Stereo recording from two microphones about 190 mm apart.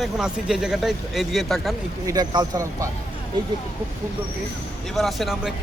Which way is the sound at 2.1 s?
20° right (ahead or behind).